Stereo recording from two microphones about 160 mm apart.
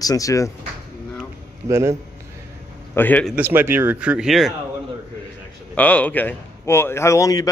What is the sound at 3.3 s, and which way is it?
Speech, 15° right (ahead or behind).